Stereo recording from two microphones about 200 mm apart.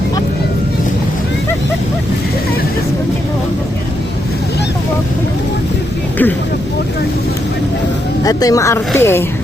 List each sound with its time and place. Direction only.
8.2 s speech: 20° left (ahead or behind)